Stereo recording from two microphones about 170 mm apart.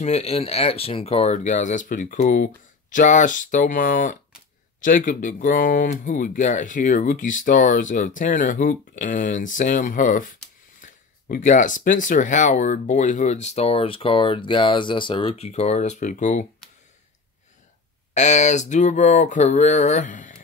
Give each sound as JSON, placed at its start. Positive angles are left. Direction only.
{"t": 0.0, "sound": "speech", "side_deg": 40}
{"t": 18.1, "sound": "speech", "side_deg": 45}